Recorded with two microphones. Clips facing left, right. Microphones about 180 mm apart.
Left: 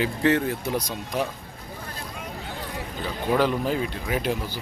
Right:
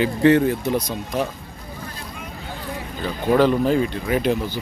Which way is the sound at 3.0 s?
5° left (ahead or behind).